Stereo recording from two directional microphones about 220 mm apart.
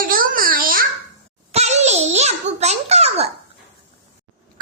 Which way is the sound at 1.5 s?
30° right (ahead or behind).